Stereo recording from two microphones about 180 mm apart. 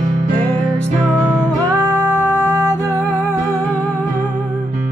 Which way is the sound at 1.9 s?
15° left (ahead or behind).